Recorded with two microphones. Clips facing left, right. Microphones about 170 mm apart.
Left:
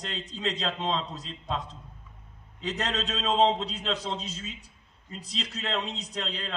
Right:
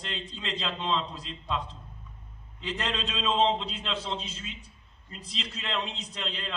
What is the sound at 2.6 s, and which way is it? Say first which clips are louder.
A man's voice: left 2 dB; 40° left (ahead or behind).